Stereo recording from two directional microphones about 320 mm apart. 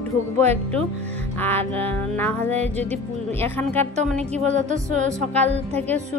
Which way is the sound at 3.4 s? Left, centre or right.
Centre.